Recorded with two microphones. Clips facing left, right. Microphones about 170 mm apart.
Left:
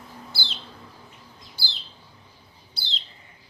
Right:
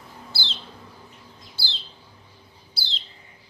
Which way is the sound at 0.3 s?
15° left (ahead or behind).